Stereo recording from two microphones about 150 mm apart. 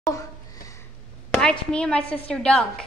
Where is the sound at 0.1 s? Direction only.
20° left (ahead or behind).